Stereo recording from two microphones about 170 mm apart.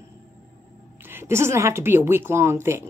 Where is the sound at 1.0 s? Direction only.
15° right (ahead or behind).